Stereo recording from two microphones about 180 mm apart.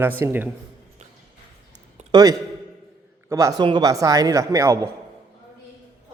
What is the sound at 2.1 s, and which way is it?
A man's voice, 20° right (ahead or behind).